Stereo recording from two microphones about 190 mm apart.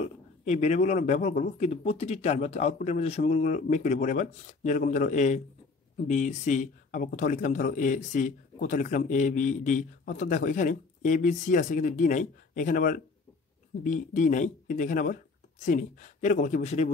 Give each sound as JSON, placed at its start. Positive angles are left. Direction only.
{"t": 0.0, "sound": "a man's voice", "side_deg": 35}